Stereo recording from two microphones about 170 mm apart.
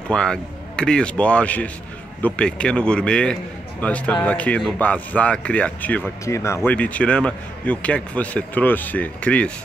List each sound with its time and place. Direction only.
0.1 s speech: 5° left (ahead or behind)